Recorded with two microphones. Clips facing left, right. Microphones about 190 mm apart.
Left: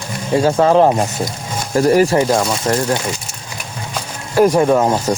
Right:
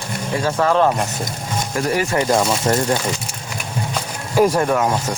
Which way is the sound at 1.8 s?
40° left (ahead or behind).